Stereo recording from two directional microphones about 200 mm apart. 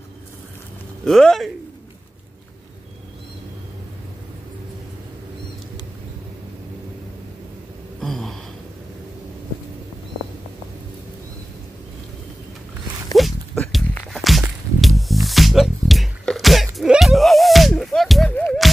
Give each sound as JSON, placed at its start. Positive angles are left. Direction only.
{"t": 1.0, "sound": "speech", "side_deg": 0}
{"t": 8.0, "sound": "a sound", "side_deg": 0}
{"t": 13.1, "sound": "walk", "side_deg": 0}